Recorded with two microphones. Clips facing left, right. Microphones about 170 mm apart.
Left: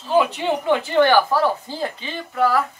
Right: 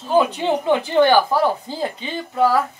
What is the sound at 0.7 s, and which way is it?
Speech, 15° right (ahead or behind).